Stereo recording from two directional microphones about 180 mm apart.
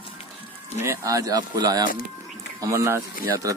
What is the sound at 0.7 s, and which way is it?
Speech, 15° right (ahead or behind).